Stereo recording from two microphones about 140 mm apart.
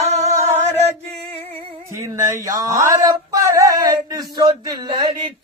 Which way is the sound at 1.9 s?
20° right (ahead or behind).